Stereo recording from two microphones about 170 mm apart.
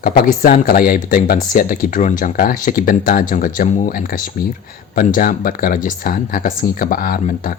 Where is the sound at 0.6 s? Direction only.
60° left (ahead or behind).